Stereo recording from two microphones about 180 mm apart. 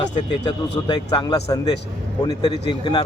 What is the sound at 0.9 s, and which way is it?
Speech, 25° left (ahead or behind).